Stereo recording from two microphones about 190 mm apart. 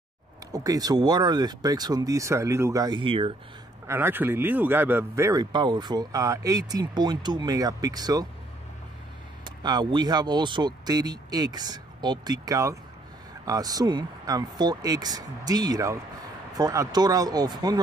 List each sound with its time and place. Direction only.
0.5 s speech: 20° right (ahead or behind)
3.8 s speech: 10° right (ahead or behind)
9.4 s speech: 20° right (ahead or behind)